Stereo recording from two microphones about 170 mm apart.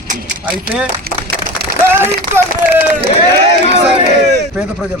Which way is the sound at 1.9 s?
15° right (ahead or behind).